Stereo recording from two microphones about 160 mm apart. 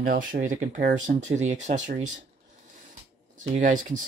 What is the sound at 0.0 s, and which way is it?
Speech, 60° right (ahead or behind).